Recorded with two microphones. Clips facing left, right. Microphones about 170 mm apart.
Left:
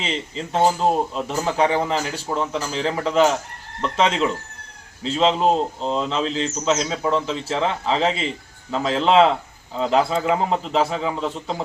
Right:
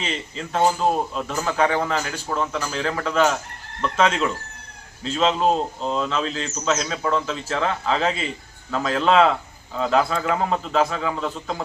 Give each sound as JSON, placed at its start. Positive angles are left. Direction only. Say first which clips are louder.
{"t": 0.0, "sound": "speech", "louder": "left 2 dB", "side_deg": 25}